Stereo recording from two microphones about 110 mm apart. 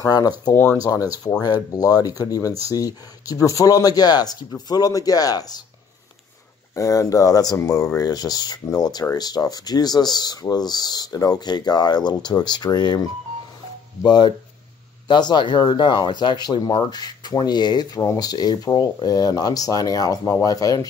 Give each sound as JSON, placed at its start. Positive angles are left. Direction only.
{"t": 0.0, "sound": "speech", "side_deg": 35}
{"t": 6.7, "sound": "speech", "side_deg": 30}